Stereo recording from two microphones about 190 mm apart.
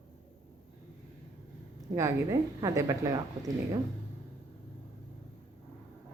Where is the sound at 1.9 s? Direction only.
15° right (ahead or behind).